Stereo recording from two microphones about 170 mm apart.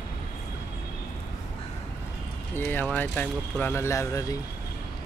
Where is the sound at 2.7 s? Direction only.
10° left (ahead or behind).